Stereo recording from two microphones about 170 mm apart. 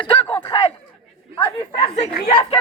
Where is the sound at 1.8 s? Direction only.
35° left (ahead or behind).